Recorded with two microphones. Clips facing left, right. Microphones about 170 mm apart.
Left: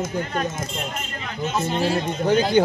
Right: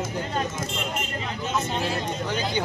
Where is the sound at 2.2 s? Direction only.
50° left (ahead or behind).